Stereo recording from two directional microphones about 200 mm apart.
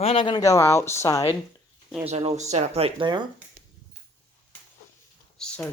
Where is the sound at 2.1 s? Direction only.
35° right (ahead or behind).